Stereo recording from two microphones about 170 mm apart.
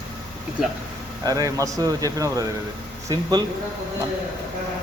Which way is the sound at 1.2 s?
20° right (ahead or behind).